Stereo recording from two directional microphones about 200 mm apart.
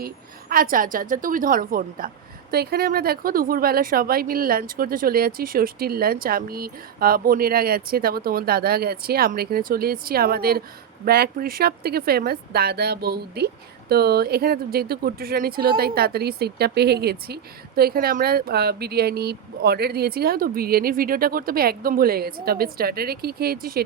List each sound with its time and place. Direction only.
0.0 s a woman's voice: 45° right (ahead or behind)